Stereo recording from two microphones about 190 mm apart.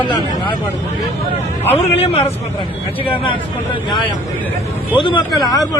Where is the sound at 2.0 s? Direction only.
30° left (ahead or behind).